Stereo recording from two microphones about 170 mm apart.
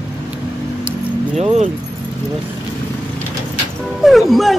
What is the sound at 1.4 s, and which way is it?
Keys jangling, 40° right (ahead or behind).